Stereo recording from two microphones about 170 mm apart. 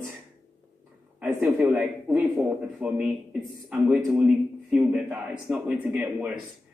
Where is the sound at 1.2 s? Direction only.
5° right (ahead or behind).